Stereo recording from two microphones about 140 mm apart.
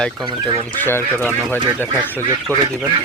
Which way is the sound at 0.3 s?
35° right (ahead or behind).